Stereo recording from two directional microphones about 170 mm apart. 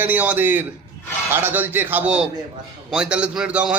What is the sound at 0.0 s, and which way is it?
A man's voice, 10° right (ahead or behind).